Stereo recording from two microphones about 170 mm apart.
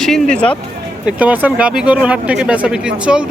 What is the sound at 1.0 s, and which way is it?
Speech, 10° right (ahead or behind).